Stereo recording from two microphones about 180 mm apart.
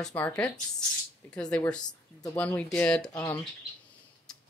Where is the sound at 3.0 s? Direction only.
20° left (ahead or behind).